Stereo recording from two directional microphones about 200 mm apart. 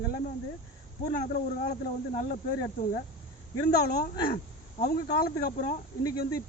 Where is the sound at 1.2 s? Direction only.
50° left (ahead or behind).